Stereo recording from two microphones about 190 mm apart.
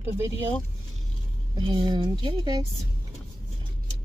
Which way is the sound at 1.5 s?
25° right (ahead or behind).